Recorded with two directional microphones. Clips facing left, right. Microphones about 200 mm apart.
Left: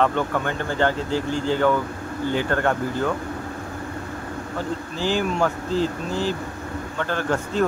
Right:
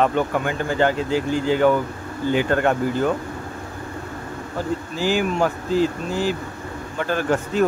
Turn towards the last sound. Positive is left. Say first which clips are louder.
# right 2 dB
turn(degrees=-15)  # may be behind; listen again after turning